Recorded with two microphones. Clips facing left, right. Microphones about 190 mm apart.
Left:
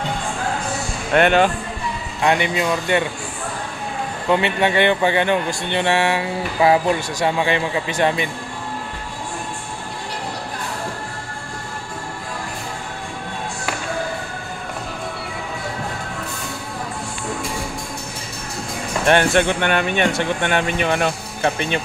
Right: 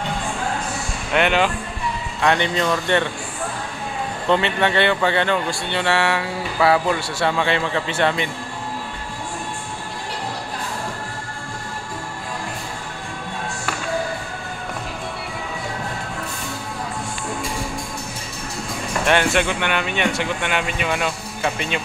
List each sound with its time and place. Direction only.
1.1 s speech: 50° left (ahead or behind)
2.2 s speech: 10° left (ahead or behind)
4.3 s speech: 15° left (ahead or behind)
19.0 s speech: 45° left (ahead or behind)